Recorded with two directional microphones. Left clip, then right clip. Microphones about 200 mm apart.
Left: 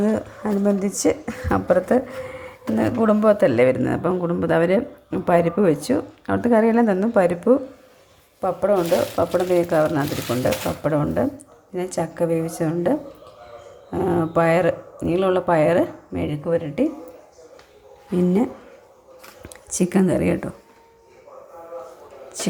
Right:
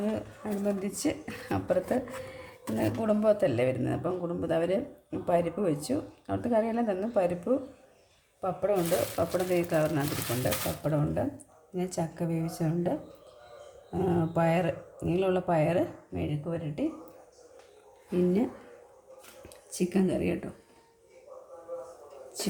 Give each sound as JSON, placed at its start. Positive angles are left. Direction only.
{"t": 0.0, "sound": "a woman's voice", "side_deg": 15}
{"t": 13.9, "sound": "speech", "side_deg": 15}
{"t": 19.8, "sound": "speech", "side_deg": 15}